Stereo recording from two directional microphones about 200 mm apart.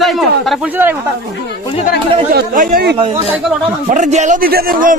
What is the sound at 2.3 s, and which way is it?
A man's voice, 45° right (ahead or behind).